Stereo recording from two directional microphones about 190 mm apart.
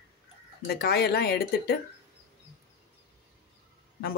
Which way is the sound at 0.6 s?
55° left (ahead or behind).